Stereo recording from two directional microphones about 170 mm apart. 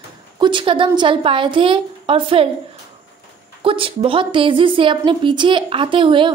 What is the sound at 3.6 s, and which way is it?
A woman's voice, 30° right (ahead or behind).